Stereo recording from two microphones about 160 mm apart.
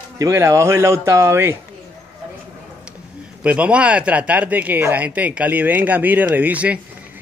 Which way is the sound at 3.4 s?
5° right (ahead or behind).